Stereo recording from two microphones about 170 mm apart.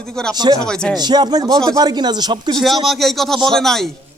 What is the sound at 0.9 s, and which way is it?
Speech, 25° right (ahead or behind).